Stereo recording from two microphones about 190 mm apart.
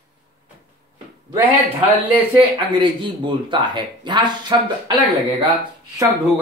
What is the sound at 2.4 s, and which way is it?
Speech, 25° right (ahead or behind).